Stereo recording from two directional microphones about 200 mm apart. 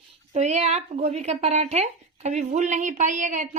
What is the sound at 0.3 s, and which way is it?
Speech, 35° right (ahead or behind).